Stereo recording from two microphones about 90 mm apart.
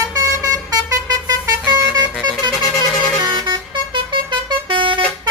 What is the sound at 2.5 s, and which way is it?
Music, 35° left (ahead or behind).